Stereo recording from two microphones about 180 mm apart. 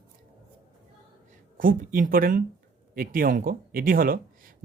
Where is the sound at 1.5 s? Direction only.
50° right (ahead or behind).